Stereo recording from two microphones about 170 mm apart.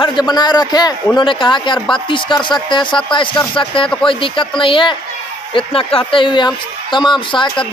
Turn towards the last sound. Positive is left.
turn(degrees=30)  # may be behind; listen again after turning